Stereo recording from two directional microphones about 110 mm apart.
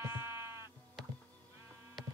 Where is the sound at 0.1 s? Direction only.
20° right (ahead or behind).